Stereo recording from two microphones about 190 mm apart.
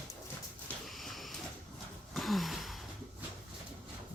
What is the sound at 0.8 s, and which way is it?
Printer, centre (ahead or behind).